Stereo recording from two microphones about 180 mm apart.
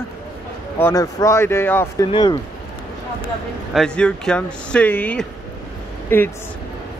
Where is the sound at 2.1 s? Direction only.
25° left (ahead or behind).